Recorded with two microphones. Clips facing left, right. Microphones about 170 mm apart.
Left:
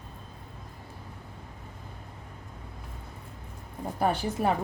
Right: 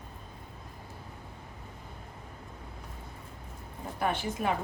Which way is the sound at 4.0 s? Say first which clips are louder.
Left 4 dB; 35° left (ahead or behind).